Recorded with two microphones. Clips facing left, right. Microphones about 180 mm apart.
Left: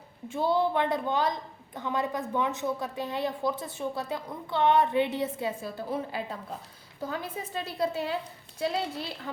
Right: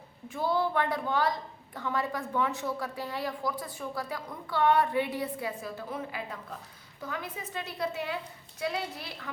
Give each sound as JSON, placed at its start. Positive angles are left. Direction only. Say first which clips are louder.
{"t": 0.3, "sound": "a woman's voice", "louder": "left 3 dB", "side_deg": 25}